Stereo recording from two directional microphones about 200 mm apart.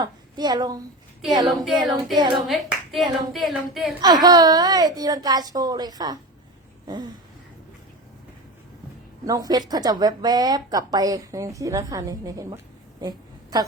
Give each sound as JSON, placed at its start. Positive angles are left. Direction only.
{"t": 0.0, "sound": "a woman's voice", "side_deg": -20}
{"t": 1.5, "sound": "clapping", "side_deg": 0}
{"t": 4.0, "sound": "a woman's voice", "side_deg": -20}
{"t": 6.8, "sound": "a sound", "side_deg": -20}
{"t": 9.2, "sound": "a woman's voice", "side_deg": -20}
{"t": 13.0, "sound": "a sound", "side_deg": -20}